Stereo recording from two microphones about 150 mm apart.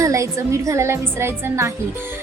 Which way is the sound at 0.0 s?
20° right (ahead or behind).